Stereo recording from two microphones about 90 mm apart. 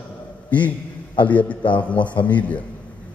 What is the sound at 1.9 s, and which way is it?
Speech, 60° left (ahead or behind).